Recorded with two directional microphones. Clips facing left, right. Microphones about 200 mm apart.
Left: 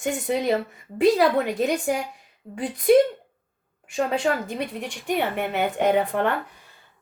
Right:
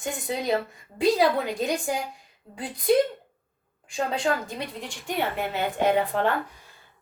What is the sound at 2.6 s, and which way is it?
Speech, 65° left (ahead or behind).